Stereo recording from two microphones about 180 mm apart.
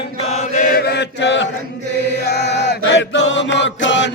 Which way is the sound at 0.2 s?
35° left (ahead or behind).